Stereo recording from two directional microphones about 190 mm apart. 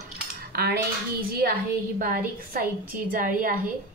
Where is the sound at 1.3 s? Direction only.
55° right (ahead or behind).